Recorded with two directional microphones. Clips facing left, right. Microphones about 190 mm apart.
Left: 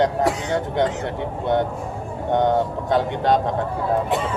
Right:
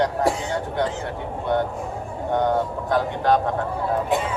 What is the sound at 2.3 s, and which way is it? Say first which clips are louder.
Speech: left 2 dB; 20° left (ahead or behind).